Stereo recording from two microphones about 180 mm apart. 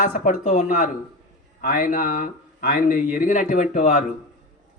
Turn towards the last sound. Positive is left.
turn(degrees=40)  # may be behind; listen again after turning